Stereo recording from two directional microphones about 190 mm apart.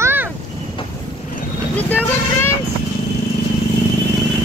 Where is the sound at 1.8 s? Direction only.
10° left (ahead or behind).